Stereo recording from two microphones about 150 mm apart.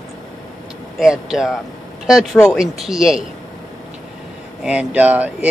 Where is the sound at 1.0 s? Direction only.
5° right (ahead or behind).